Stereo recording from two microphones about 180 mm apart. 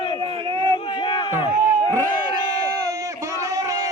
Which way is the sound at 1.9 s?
15° right (ahead or behind).